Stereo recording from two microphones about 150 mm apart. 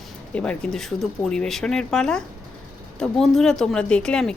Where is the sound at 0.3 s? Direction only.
5° left (ahead or behind).